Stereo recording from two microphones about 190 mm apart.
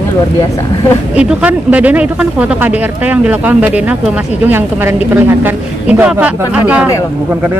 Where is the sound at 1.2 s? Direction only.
5° right (ahead or behind).